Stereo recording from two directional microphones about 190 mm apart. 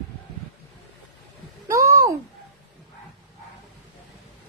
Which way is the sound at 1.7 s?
15° right (ahead or behind).